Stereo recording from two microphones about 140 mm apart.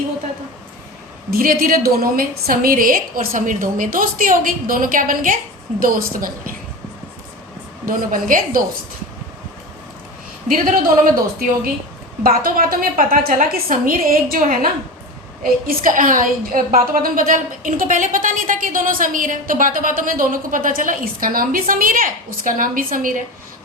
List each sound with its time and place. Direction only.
1.3 s a woman's voice: 90° right; by 5.4 s 70° right (ahead or behind)
5.8 s a woman's voice: 80° right
7.9 s a woman's voice: 75° right (ahead or behind)
10.5 s a woman's voice: 85° right